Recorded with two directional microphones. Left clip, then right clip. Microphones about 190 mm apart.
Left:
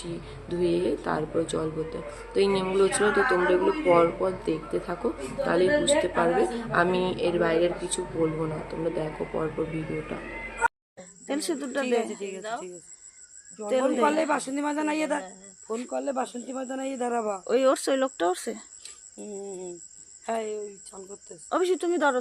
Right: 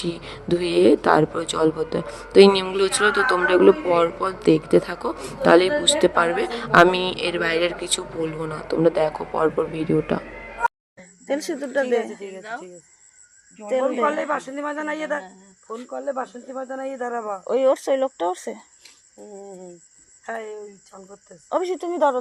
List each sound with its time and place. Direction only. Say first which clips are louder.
0.0 s speech: right 8 dB; 50° right (ahead or behind)
10.9 s a man's voice: right 6 dB; centre (ahead or behind); by 17.4 s 35° left (ahead or behind)
17.4 s a man's voice: right 5 dB; 20° left (ahead or behind)
20.2 s a man's voice: left 1 dB; 25° left (ahead or behind)